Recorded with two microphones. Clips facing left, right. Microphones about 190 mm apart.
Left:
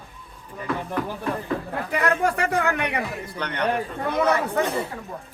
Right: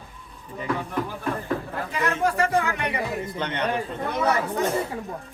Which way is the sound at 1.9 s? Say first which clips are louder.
Left 2 dB; 60° left (ahead or behind).